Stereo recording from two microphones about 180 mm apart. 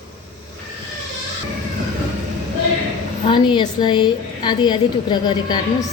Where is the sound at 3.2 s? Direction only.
25° left (ahead or behind).